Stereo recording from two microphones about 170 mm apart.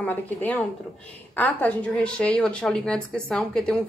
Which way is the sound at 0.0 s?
10° left (ahead or behind).